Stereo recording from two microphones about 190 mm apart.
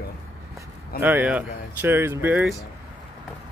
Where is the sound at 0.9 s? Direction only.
10° right (ahead or behind).